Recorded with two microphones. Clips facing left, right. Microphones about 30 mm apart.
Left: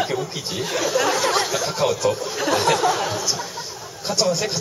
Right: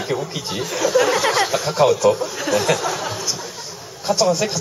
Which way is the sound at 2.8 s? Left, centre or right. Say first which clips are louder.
Left 3 dB; centre.